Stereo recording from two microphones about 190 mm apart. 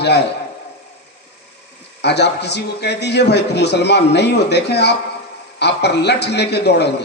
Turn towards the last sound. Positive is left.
turn(degrees=60)  # may be behind; listen again after turning